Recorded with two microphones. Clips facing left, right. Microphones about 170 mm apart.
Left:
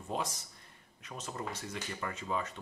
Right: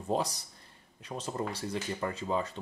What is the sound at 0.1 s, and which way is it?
Speech, 35° right (ahead or behind).